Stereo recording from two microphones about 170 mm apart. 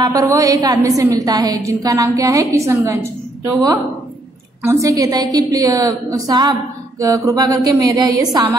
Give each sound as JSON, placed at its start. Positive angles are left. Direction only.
{"t": 0.0, "sound": "a woman's voice", "side_deg": -20}
{"t": 4.6, "sound": "a woman's voice", "side_deg": -20}